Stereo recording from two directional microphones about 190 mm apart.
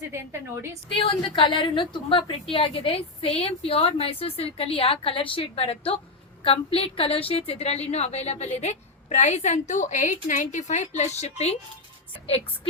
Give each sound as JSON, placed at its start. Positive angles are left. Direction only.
{"t": 0.1, "sound": "a woman's voice", "side_deg": -15}
{"t": 0.9, "sound": "a woman's voice", "side_deg": 25}